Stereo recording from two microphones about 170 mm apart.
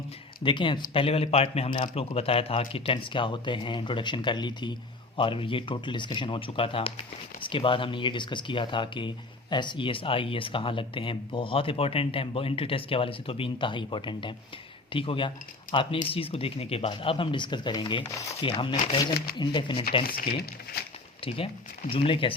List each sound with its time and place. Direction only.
0.4 s speech: 30° left (ahead or behind)
20.1 s speech: 60° left (ahead or behind)
21.2 s speech: 35° left (ahead or behind)